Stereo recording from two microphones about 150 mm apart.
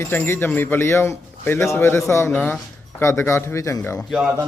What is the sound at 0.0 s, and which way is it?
Speech, 15° left (ahead or behind).